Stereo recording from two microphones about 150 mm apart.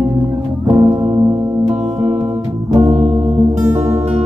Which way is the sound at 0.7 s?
20° right (ahead or behind).